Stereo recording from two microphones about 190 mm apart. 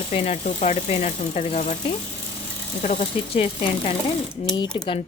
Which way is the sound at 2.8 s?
35° left (ahead or behind).